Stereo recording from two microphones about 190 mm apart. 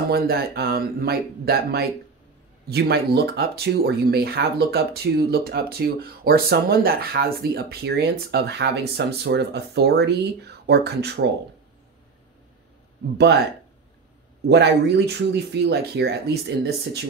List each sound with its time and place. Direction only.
0.1 s speech: 55° right (ahead or behind)
14.5 s speech: 60° right (ahead or behind)